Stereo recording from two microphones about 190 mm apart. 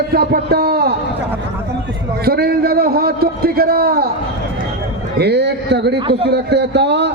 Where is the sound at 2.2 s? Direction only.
55° right (ahead or behind).